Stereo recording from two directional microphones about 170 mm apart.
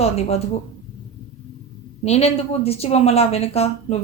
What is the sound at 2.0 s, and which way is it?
Speech, 40° left (ahead or behind).